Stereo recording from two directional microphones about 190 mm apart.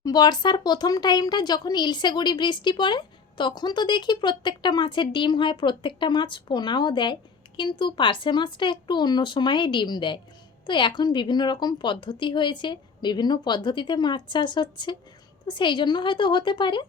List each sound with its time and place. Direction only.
0.0 s speech: 20° left (ahead or behind)